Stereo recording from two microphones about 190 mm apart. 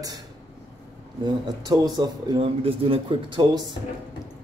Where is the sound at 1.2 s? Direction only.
20° right (ahead or behind).